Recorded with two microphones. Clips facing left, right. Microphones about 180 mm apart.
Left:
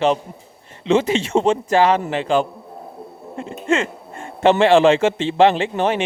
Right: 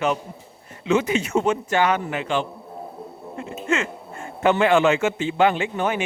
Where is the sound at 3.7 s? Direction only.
30° left (ahead or behind).